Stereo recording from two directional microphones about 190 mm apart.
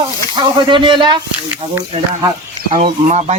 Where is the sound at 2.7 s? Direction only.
35° right (ahead or behind).